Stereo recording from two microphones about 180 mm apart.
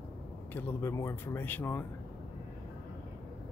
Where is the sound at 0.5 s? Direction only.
15° left (ahead or behind).